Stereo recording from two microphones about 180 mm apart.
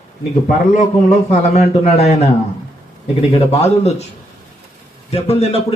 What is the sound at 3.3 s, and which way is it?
Speech, 35° left (ahead or behind).